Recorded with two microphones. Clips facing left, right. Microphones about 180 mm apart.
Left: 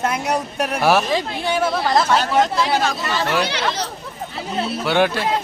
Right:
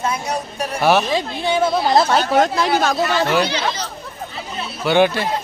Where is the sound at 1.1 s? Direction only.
15° right (ahead or behind).